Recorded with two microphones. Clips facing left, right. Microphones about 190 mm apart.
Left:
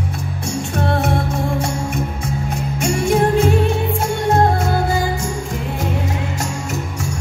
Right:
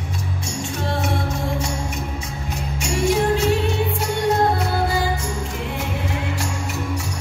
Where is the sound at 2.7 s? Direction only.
55° left (ahead or behind).